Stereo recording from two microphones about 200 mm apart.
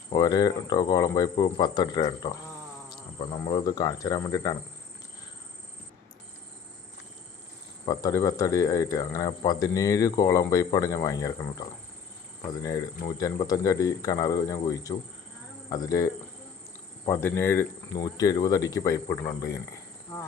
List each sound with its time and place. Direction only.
0.1 s speech: 20° left (ahead or behind)
7.9 s speech: 15° left (ahead or behind)